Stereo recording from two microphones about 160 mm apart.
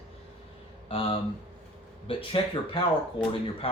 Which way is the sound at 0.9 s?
35° left (ahead or behind).